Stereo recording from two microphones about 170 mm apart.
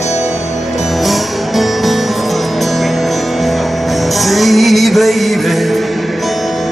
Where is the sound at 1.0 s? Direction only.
Centre (ahead or behind).